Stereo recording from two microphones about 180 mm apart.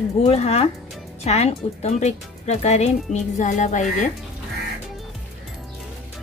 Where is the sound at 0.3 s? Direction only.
35° left (ahead or behind).